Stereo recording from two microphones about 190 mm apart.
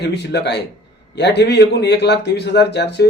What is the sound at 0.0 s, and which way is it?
Speech, 60° left (ahead or behind).